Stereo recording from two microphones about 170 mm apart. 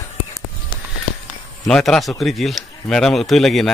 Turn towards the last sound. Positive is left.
turn(degrees=0)  # may be behind; listen again after turning